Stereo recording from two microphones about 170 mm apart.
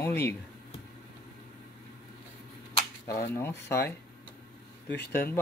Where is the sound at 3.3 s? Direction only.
15° left (ahead or behind).